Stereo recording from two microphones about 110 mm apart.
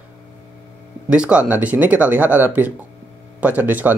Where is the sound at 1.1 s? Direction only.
10° right (ahead or behind).